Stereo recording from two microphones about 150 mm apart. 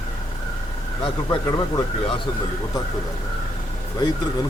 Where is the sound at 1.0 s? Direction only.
25° left (ahead or behind).